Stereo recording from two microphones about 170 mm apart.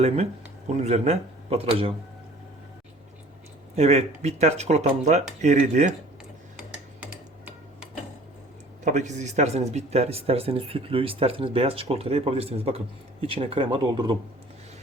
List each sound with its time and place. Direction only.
0.8 s speech: 40° right (ahead or behind)
3.8 s speech: 40° right (ahead or behind)
6.6 s tick-tock: 10° right (ahead or behind)
8.8 s speech: 45° right (ahead or behind); by 14.2 s 30° right (ahead or behind)